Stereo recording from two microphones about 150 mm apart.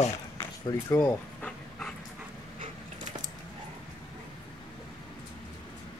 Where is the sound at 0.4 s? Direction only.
20° left (ahead or behind).